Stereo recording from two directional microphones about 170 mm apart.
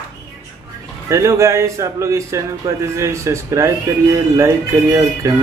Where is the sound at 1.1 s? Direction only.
15° right (ahead or behind).